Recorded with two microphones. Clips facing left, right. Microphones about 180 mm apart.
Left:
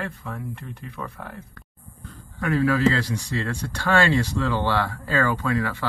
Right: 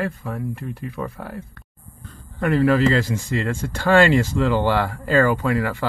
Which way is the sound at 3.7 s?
15° right (ahead or behind).